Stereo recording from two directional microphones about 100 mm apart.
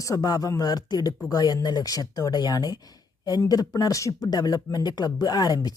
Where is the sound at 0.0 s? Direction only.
35° left (ahead or behind).